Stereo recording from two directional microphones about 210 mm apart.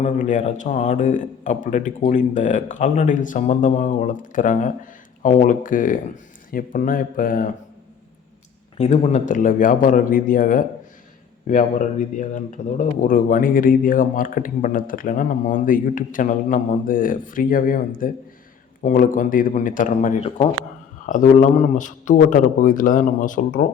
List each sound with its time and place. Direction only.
0.0 s speech: 35° left (ahead or behind)
8.8 s speech: 35° left (ahead or behind)